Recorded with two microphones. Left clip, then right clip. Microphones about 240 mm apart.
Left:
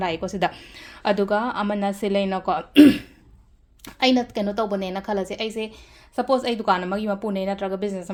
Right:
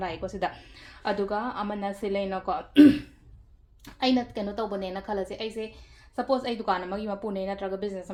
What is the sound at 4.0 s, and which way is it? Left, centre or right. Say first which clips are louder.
A woman's voice: left 6 dB; left.